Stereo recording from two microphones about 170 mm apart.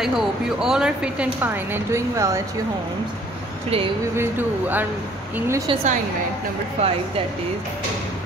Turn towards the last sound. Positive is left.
turn(degrees=-40)  # may be behind; listen again after turning